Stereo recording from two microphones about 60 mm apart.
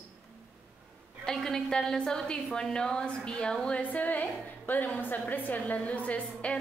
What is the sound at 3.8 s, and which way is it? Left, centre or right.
A woman's voice, left.